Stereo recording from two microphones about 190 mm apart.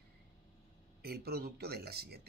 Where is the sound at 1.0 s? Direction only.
55° right (ahead or behind).